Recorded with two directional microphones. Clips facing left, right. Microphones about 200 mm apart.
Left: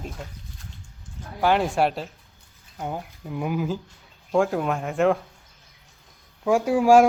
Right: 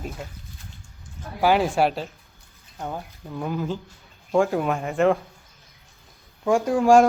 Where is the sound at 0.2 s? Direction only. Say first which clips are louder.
Right 2 dB; 5° right (ahead or behind).